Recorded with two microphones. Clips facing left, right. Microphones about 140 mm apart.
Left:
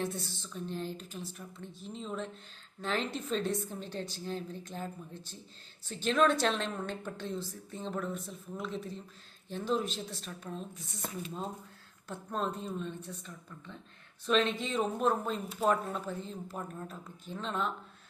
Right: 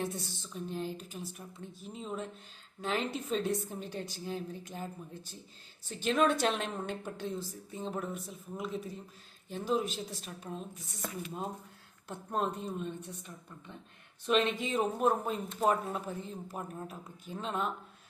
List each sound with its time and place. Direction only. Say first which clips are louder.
0.0 s a woman's voice: left 1 dB; 10° right (ahead or behind)